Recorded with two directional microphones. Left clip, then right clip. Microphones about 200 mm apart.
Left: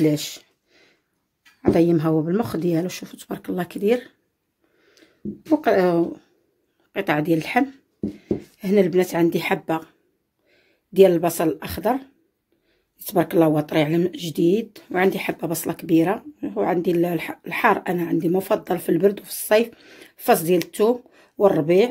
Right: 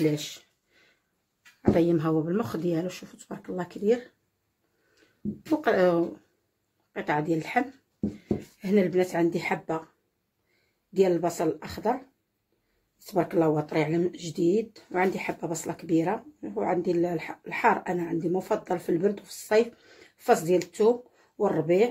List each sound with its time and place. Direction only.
0.0 s a sound: 40° left (ahead or behind)
1.6 s speech: 40° left (ahead or behind)
5.0 s a sound: 45° left (ahead or behind)
5.6 s speech: 40° left (ahead or behind)
6.9 s speech: 50° left (ahead or behind)
10.9 s speech: 55° left (ahead or behind)
13.0 s speech: 50° left (ahead or behind)